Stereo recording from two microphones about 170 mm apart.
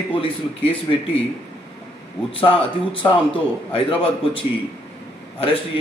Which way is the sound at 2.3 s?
30° left (ahead or behind).